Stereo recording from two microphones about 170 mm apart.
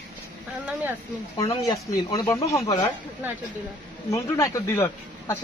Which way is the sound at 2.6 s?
30° left (ahead or behind).